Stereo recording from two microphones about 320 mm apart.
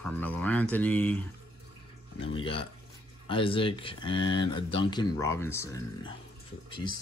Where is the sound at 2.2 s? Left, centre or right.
Centre.